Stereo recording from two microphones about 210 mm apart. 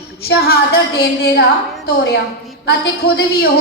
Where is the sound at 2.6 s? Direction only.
50° left (ahead or behind).